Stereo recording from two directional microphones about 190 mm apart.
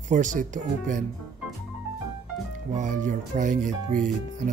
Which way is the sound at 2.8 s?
40° right (ahead or behind).